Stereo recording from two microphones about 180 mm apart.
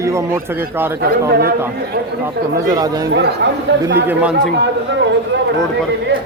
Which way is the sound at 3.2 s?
75° right (ahead or behind).